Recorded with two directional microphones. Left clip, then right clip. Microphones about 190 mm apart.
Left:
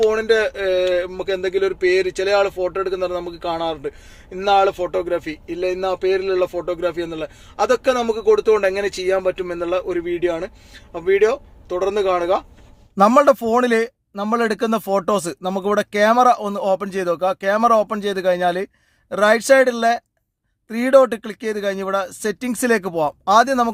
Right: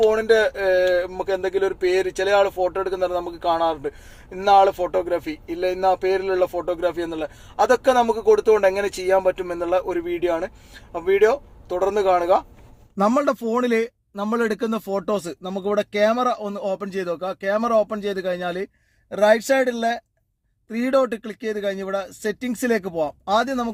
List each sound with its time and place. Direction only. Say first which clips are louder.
0.1 s speech: even; 10° left (ahead or behind)
7.5 s speech: right 1 dB; 45° left (ahead or behind)
8.2 s speech: left 4 dB; 10° left (ahead or behind)
13.0 s speech: left 7 dB; 25° left (ahead or behind)